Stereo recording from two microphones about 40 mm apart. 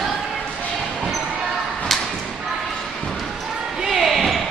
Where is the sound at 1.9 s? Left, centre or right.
Centre.